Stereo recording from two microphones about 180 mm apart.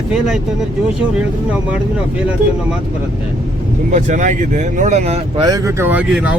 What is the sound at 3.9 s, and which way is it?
Speech, 45° right (ahead or behind).